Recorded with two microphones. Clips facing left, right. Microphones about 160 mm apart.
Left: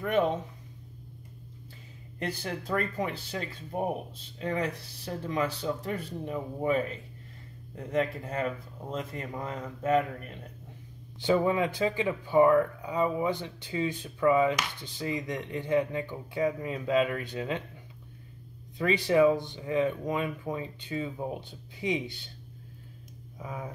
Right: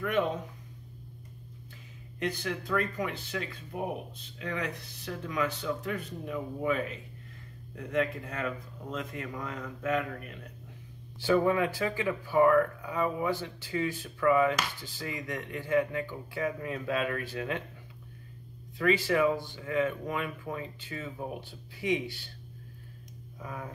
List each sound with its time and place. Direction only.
2.1 s speech: 35° left (ahead or behind)
11.1 s speech: 20° left (ahead or behind)
18.8 s speech: 20° left (ahead or behind)
23.4 s speech: 15° left (ahead or behind)